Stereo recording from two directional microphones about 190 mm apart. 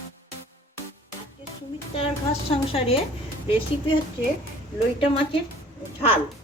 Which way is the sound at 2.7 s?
30° left (ahead or behind).